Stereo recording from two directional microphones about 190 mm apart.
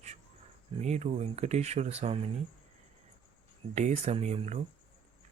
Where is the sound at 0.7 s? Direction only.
35° right (ahead or behind).